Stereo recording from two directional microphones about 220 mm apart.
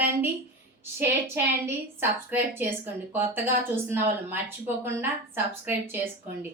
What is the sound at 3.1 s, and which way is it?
A woman's voice, 10° right (ahead or behind).